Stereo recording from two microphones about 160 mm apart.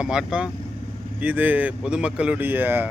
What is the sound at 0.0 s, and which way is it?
Speech, 5° right (ahead or behind).